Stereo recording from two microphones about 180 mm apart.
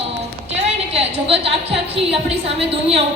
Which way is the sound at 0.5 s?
35° right (ahead or behind).